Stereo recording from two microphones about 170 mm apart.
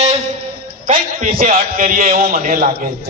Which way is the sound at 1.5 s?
55° right (ahead or behind).